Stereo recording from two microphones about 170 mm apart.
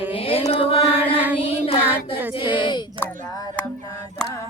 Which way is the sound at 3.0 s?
20° left (ahead or behind).